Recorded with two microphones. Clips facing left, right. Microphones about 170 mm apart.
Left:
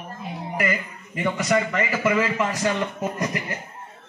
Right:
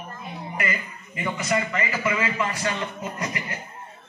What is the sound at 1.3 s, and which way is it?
Speech, 70° left (ahead or behind).